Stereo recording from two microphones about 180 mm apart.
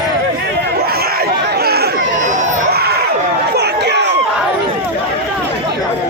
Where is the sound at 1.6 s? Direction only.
60° right (ahead or behind).